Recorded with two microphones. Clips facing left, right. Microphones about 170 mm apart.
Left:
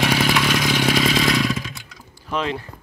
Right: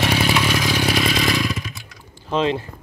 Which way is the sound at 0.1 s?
10° right (ahead or behind).